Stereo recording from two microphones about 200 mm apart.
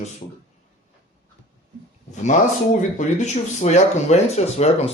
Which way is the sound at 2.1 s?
35° left (ahead or behind).